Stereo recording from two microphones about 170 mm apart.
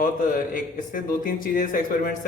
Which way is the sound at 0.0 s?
50° left (ahead or behind).